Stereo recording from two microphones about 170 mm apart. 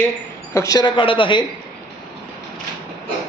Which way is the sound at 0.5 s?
20° left (ahead or behind).